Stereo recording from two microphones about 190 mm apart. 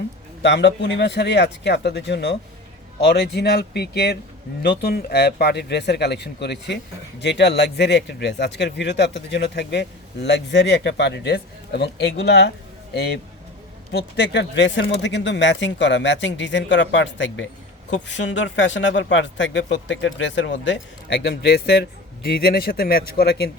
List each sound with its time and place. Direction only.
0.4 s speech: 65° left (ahead or behind)